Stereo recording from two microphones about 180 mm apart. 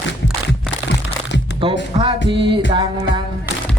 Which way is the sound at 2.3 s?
30° right (ahead or behind).